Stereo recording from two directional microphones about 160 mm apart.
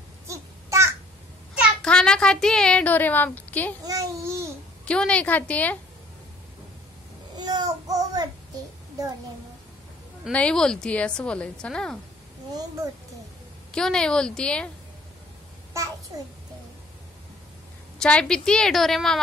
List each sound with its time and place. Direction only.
0.3 s a sound: 15° right (ahead or behind)
1.8 s a woman's voice: 5° left (ahead or behind)
3.8 s babbling: 20° right (ahead or behind)
4.8 s a woman's voice: 5° left (ahead or behind)
7.3 s child singing: 25° right (ahead or behind)
10.3 s a woman's voice: 5° left (ahead or behind)
13.7 s a woman's voice: 5° left (ahead or behind)
15.7 s a sound: 20° right (ahead or behind)
17.9 s a woman's voice: 5° left (ahead or behind)